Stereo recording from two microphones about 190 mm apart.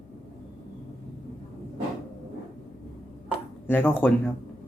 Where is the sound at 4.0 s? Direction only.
10° left (ahead or behind).